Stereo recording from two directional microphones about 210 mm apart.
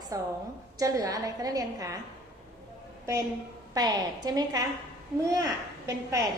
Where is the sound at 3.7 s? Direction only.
20° right (ahead or behind).